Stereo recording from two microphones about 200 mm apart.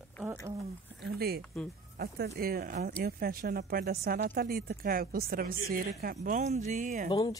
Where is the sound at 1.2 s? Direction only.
50° right (ahead or behind).